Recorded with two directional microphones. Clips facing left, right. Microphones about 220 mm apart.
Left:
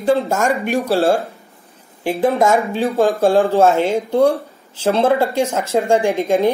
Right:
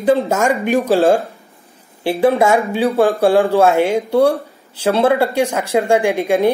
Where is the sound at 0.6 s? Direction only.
15° right (ahead or behind).